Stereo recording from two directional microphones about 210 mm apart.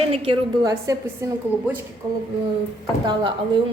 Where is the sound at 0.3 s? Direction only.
15° right (ahead or behind).